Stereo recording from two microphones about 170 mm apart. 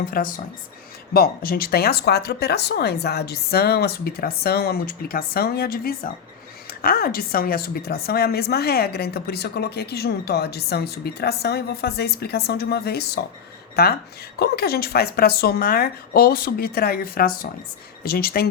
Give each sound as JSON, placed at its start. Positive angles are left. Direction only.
{"t": 0.0, "sound": "a woman's voice", "side_deg": 60}